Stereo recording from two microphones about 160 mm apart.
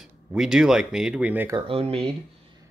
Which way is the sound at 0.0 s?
5° right (ahead or behind).